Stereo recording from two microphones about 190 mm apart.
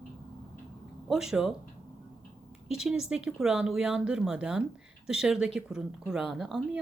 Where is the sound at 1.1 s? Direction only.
Centre (ahead or behind).